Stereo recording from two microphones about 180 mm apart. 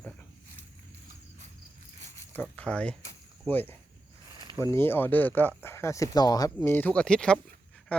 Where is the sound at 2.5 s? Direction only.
5° left (ahead or behind).